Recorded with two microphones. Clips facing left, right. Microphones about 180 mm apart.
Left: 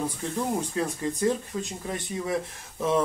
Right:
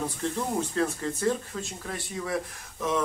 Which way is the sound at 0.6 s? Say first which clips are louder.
Right 1 dB; 15° left (ahead or behind).